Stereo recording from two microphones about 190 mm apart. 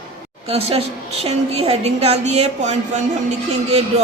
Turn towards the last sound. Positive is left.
turn(degrees=-35)  # may be behind; listen again after turning